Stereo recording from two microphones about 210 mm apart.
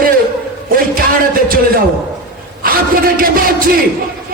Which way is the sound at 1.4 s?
45° right (ahead or behind).